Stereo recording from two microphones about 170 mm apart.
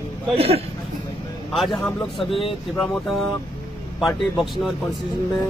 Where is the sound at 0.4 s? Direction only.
35° right (ahead or behind).